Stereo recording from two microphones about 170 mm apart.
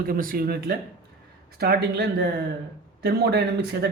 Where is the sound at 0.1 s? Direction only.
55° right (ahead or behind).